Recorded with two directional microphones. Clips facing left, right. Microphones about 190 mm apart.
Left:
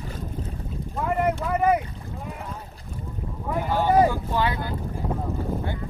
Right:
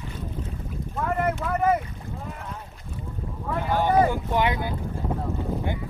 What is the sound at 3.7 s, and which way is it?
Speech, 15° right (ahead or behind).